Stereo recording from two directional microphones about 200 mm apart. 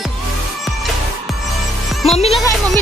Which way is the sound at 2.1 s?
30° left (ahead or behind).